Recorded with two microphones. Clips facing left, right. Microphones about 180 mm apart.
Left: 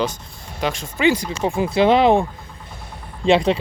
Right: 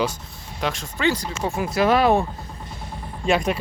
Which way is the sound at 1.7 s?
25° left (ahead or behind).